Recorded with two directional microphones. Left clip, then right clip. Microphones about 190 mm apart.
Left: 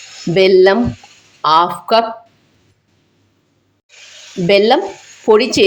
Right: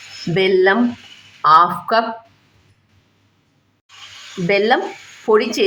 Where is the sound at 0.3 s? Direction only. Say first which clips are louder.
Left 5 dB; 20° left (ahead or behind).